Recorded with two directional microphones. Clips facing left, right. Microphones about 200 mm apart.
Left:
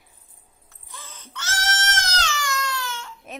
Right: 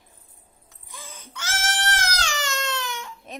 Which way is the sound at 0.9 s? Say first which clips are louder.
Right 1 dB; 10° right (ahead or behind).